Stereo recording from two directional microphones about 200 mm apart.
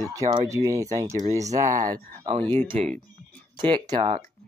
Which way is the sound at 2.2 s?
30° right (ahead or behind).